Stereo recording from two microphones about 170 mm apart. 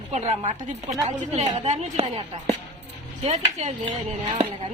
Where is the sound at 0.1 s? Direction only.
45° right (ahead or behind).